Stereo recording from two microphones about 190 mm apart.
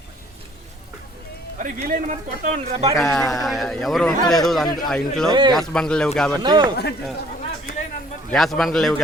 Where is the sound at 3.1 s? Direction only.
Centre (ahead or behind).